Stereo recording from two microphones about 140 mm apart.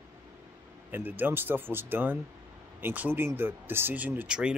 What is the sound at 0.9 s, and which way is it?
Speech, 15° right (ahead or behind).